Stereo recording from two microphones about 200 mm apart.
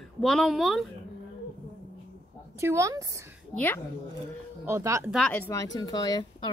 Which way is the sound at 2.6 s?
15° right (ahead or behind).